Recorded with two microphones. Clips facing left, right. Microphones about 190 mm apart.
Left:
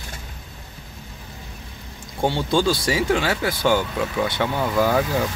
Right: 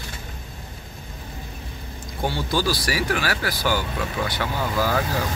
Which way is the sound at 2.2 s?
25° left (ahead or behind).